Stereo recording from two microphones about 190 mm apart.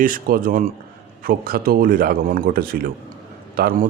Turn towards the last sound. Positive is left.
turn(degrees=-50)  # may be behind; listen again after turning